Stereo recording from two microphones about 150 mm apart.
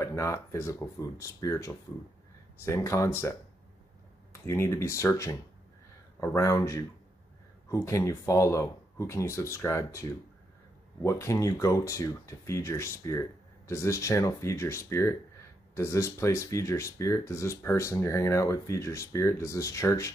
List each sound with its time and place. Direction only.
0.0 s speech: 20° left (ahead or behind)